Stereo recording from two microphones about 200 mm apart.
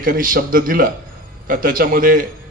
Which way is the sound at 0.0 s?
45° right (ahead or behind).